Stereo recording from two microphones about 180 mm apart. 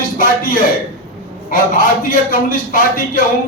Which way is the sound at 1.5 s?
50° left (ahead or behind).